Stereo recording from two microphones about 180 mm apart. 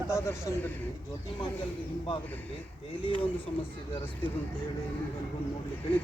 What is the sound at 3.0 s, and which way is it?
Speech, 30° left (ahead or behind).